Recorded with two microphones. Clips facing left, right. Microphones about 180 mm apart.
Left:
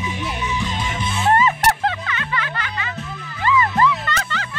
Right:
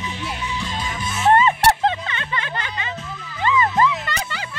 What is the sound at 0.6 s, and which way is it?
Music, 25° left (ahead or behind).